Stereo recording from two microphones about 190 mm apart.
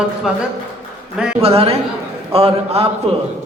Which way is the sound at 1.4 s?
30° right (ahead or behind).